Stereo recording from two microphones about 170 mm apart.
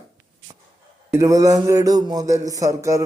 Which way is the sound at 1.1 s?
20° right (ahead or behind).